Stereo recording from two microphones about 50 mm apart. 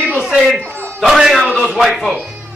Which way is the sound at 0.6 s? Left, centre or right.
Right.